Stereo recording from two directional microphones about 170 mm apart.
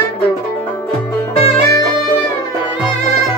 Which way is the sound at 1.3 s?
35° left (ahead or behind).